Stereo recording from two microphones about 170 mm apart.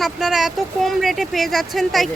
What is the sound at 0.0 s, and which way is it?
Speech, centre (ahead or behind).